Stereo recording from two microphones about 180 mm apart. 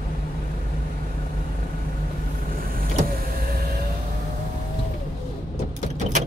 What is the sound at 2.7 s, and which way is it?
Vehicle, 55° right (ahead or behind).